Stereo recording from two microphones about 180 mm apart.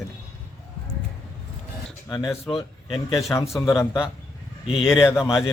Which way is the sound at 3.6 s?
15° left (ahead or behind).